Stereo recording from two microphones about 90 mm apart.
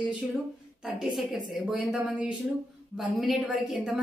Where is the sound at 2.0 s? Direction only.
15° right (ahead or behind).